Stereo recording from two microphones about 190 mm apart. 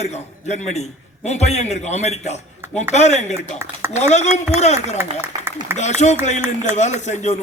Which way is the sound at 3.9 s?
35° left (ahead or behind).